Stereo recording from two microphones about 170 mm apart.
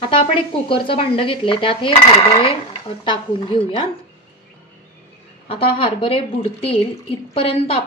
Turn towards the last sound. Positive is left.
turn(degrees=35)  # may be behind; listen again after turning